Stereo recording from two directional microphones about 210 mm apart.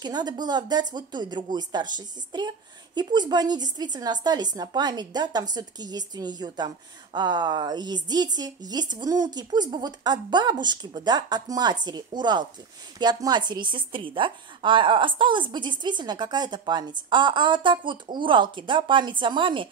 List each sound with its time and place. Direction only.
0.0 s a woman's voice: 20° right (ahead or behind)